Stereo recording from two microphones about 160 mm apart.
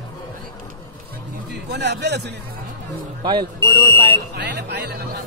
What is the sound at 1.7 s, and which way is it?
Speech, 90° right.